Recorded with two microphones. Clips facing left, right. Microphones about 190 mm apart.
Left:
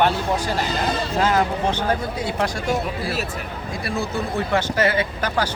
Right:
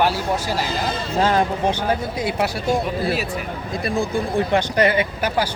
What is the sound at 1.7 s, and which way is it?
Speech, 10° right (ahead or behind).